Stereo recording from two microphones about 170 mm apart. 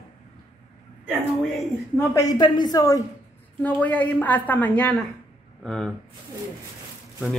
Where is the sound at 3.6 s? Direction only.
10° left (ahead or behind).